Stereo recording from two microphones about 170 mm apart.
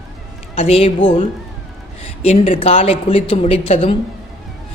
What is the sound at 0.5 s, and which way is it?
A woman's voice, 35° left (ahead or behind).